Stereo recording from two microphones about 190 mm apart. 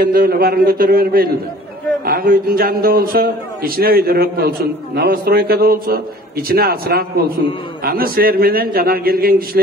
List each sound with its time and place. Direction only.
0.0 s a man's voice: 50° right (ahead or behind)